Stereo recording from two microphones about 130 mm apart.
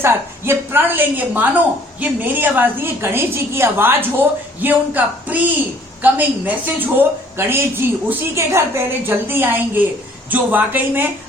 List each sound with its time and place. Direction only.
0.0 s a woman's voice: 20° right (ahead or behind)